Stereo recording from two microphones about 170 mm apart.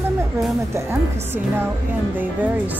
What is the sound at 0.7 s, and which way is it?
Speech, 15° right (ahead or behind).